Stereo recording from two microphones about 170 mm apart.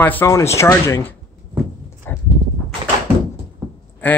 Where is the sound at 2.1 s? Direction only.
10° left (ahead or behind).